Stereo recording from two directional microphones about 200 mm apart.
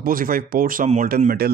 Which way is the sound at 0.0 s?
45° right (ahead or behind).